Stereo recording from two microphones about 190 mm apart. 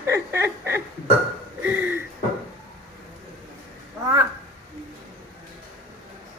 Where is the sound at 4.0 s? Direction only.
15° right (ahead or behind).